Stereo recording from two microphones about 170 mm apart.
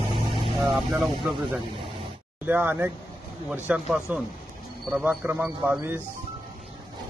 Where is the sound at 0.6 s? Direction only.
Centre (ahead or behind).